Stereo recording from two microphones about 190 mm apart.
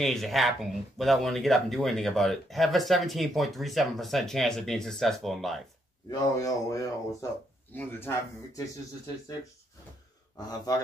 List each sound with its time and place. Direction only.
0.0 s speech: centre (ahead or behind)
6.0 s speech: 15° left (ahead or behind)